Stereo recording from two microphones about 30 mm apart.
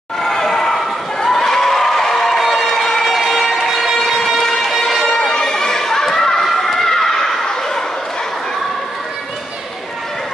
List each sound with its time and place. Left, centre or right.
0.2 s a sound: centre
1.2 s crowd: centre
2.9 s a sound: centre
4.0 s music: centre
5.3 s crowd: left
6.4 s run: centre